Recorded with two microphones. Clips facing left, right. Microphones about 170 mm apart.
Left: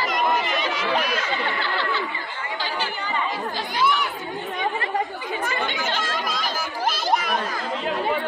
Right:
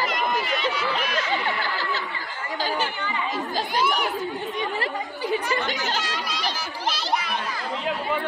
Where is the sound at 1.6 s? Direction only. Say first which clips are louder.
Left 2 dB; 40° right (ahead or behind).